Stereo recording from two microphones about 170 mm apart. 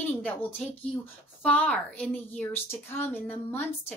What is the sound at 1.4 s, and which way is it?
A woman's voice, 5° left (ahead or behind).